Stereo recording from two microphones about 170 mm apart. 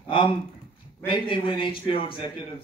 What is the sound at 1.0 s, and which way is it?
Speech, 30° left (ahead or behind).